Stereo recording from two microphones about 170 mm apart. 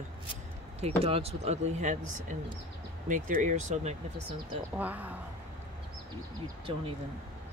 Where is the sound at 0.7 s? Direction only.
35° right (ahead or behind).